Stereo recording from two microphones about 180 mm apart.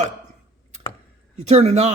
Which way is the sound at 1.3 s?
35° right (ahead or behind).